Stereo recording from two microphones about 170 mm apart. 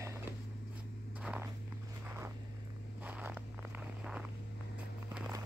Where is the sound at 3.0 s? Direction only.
10° right (ahead or behind).